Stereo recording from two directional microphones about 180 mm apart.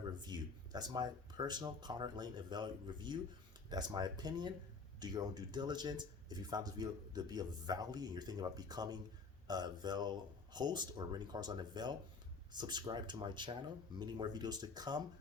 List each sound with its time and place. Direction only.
0.2 s speech: 25° right (ahead or behind)